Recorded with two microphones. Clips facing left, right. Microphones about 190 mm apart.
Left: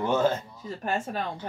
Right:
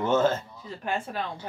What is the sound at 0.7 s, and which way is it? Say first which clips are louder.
Speech: left 2 dB; 40° left (ahead or behind).